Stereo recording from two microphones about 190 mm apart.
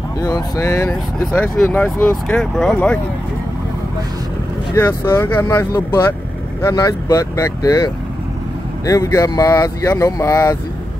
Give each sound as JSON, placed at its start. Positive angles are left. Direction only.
{"t": 0.2, "sound": "speech", "side_deg": 20}
{"t": 4.7, "sound": "speech", "side_deg": 10}